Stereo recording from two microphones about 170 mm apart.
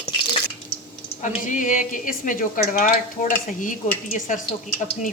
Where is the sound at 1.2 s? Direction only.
50° left (ahead or behind).